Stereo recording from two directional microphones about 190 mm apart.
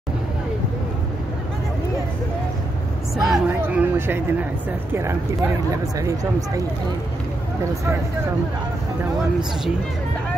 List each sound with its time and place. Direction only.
3.2 s speech: centre (ahead or behind); by 6.6 s 15° right (ahead or behind)